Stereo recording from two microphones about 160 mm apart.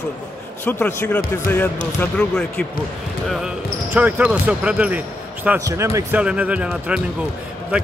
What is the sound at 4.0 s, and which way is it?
Speech, 10° right (ahead or behind).